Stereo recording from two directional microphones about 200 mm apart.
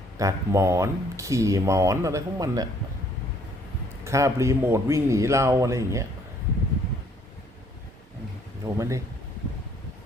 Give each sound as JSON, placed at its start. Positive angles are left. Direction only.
{"t": 0.2, "sound": "speech", "side_deg": -15}
{"t": 4.0, "sound": "speech", "side_deg": -15}
{"t": 8.6, "sound": "speech", "side_deg": -15}